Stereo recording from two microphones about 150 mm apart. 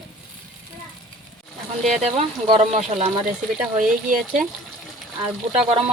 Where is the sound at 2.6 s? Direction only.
50° right (ahead or behind).